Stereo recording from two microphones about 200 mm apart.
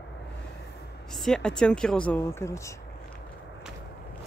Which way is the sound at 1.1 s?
Centre (ahead or behind).